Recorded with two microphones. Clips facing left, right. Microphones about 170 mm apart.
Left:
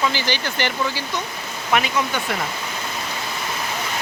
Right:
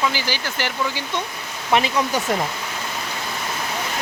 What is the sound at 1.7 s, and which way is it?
Speech, 30° right (ahead or behind).